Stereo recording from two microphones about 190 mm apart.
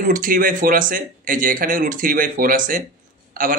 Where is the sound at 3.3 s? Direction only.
45° right (ahead or behind).